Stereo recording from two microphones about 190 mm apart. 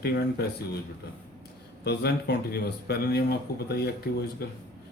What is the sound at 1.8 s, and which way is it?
A man's voice, 60° left (ahead or behind).